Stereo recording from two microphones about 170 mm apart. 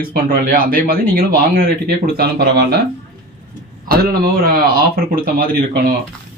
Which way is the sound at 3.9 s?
60° right (ahead or behind).